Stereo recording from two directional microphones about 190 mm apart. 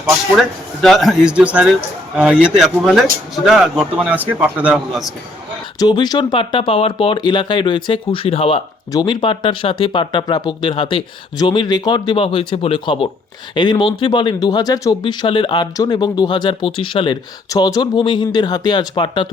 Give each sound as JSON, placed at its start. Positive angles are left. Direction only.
{"t": 0.3, "sound": "speech", "side_deg": 0}
{"t": 5.8, "sound": "speech", "side_deg": 20}